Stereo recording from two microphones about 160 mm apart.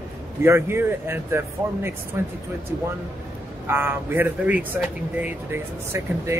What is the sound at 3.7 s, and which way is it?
Speech, 15° right (ahead or behind).